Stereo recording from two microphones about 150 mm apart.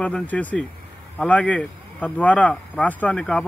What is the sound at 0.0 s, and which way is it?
Speech, 10° left (ahead or behind).